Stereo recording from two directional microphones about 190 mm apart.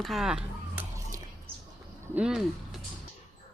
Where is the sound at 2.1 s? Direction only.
5° right (ahead or behind).